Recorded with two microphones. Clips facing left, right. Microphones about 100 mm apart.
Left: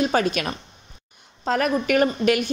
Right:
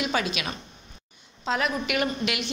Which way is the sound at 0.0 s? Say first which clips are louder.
Left 6 dB; 45° left (ahead or behind).